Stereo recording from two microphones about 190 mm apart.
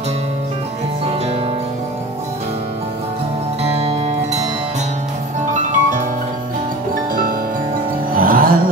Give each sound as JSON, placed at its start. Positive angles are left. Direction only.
{"t": 3.6, "sound": "music", "side_deg": -30}
{"t": 5.5, "sound": "music", "side_deg": -40}
{"t": 8.1, "sound": "music", "side_deg": -50}